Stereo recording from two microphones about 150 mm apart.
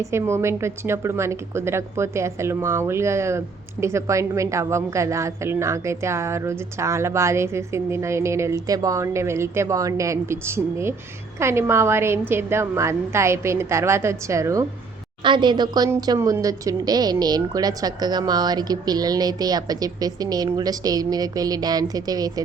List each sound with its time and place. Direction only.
0.0 s a woman's voice: 20° right (ahead or behind)
15.2 s a woman's voice: 30° right (ahead or behind)